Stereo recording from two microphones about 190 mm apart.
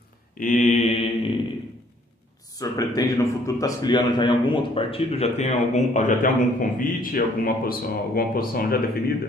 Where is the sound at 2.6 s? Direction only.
20° left (ahead or behind); by 9.0 s 50° left (ahead or behind).